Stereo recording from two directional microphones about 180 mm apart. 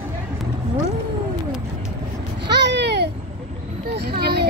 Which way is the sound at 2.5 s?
75° right (ahead or behind).